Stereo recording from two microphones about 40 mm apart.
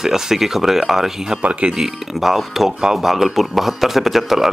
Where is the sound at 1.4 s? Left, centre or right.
Right.